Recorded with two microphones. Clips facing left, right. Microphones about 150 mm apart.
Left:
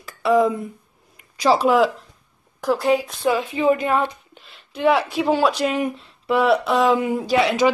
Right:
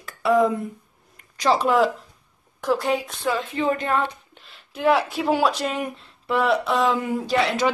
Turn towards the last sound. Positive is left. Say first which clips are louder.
# left 3 dB
turn(degrees=5)  # may be behind; listen again after turning